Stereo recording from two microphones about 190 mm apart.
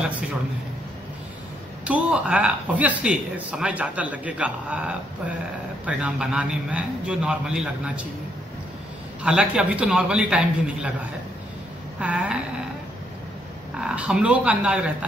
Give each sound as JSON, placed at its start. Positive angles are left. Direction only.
{"t": 1.9, "sound": "a man's voice", "side_deg": -5}
{"t": 9.2, "sound": "a man's voice", "side_deg": -5}
{"t": 12.0, "sound": "speech", "side_deg": -5}
{"t": 13.7, "sound": "a man's voice", "side_deg": -5}